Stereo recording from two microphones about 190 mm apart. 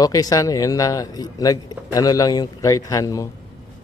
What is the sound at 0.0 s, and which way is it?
Speech, 20° left (ahead or behind).